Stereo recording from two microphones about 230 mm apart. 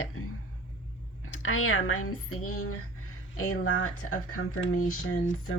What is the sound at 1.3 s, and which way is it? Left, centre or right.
Speech, left.